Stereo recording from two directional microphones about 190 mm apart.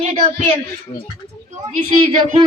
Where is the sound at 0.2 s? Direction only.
30° right (ahead or behind).